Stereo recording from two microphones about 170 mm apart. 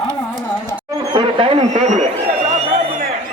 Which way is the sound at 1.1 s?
30° right (ahead or behind).